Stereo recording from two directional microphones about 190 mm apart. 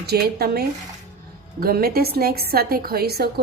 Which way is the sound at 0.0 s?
55° right (ahead or behind).